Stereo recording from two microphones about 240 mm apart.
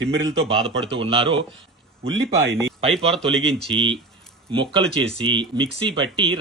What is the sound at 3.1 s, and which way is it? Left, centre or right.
Speech, centre.